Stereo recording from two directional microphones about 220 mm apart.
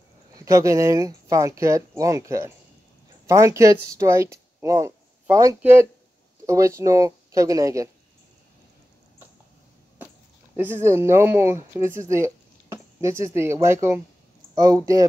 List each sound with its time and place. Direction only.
0.5 s speech: 15° right (ahead or behind)
10.6 s speech: 10° right (ahead or behind)